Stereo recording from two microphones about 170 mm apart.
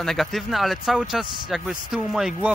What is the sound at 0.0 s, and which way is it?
Speech, centre (ahead or behind).